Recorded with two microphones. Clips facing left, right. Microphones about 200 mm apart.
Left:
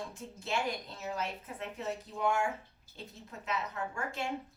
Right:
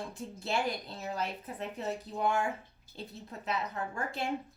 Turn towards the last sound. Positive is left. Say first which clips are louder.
# right 1 dB
turn(degrees=-35)  # may be behind; listen again after turning